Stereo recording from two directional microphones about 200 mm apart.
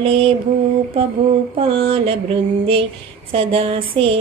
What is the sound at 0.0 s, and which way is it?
Speech, 30° right (ahead or behind).